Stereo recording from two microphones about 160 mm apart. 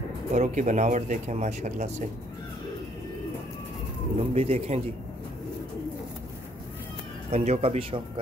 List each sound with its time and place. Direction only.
0.3 s speech: 50° right (ahead or behind)
4.2 s speech: 40° right (ahead or behind)
7.2 s speech: 45° right (ahead or behind)